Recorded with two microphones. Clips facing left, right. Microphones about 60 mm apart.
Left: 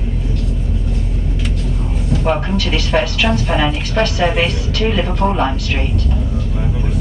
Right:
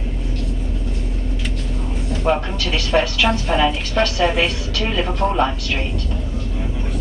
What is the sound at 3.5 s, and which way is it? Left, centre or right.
A woman's voice, left.